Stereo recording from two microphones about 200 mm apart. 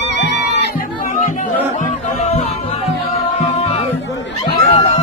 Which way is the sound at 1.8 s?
30° left (ahead or behind).